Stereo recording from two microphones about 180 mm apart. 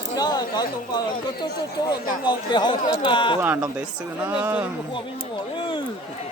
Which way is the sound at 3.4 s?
10° right (ahead or behind).